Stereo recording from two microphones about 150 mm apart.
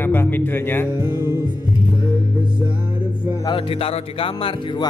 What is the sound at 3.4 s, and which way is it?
Speech, 40° left (ahead or behind).